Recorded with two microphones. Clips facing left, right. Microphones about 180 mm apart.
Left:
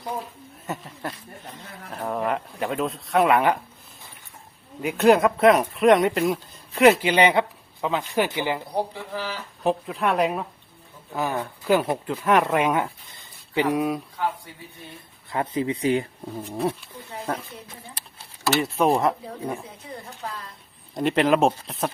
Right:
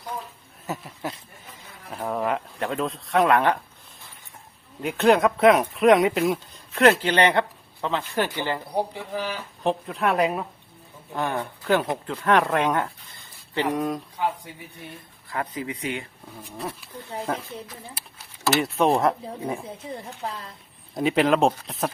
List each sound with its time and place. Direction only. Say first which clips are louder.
0.7 s speech: right 1 dB; 5° right (ahead or behind)
4.8 s speech: left 1 dB; 5° left (ahead or behind)
8.7 s a woman's voice: right 1 dB; 15° right (ahead or behind)
9.6 s speech: left 1 dB; centre (ahead or behind)
14.2 s a woman's voice: right 1 dB; 20° right (ahead or behind)
15.3 s speech: left 5 dB; 25° left (ahead or behind)
16.6 s speech: left 7 dB; centre (ahead or behind)
18.5 s speech: even; centre (ahead or behind)
19.6 s speech: right 4 dB; 25° right (ahead or behind)
20.9 s speech: even; centre (ahead or behind)